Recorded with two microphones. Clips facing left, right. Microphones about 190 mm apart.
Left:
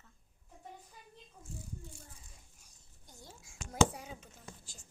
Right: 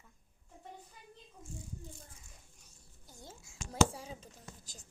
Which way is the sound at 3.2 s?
30° right (ahead or behind).